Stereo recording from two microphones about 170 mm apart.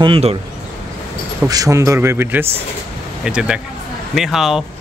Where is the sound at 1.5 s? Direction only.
20° right (ahead or behind); by 4.6 s centre (ahead or behind).